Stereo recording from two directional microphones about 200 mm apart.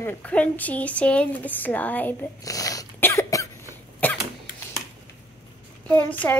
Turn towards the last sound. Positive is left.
turn(degrees=10)  # may be behind; listen again after turning